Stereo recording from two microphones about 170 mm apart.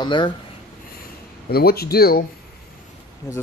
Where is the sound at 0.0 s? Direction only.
25° left (ahead or behind).